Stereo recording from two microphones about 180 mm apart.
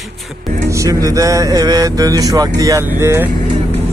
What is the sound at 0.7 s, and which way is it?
Speech, 20° right (ahead or behind).